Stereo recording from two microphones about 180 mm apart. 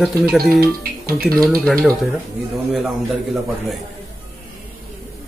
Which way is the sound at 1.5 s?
Centre (ahead or behind).